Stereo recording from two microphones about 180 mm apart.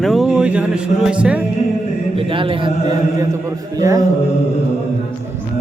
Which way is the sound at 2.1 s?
30° right (ahead or behind).